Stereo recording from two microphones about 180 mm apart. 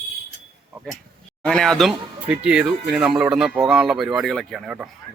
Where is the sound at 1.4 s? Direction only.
5° left (ahead or behind).